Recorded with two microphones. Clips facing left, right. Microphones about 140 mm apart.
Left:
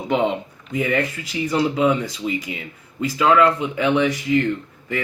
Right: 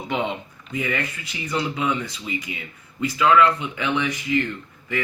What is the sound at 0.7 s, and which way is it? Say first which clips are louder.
Speech: left 5 dB; 45° left (ahead or behind).